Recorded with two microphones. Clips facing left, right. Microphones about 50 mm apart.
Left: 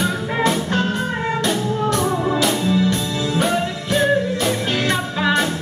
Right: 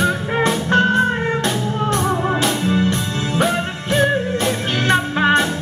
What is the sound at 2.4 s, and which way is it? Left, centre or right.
Music, right.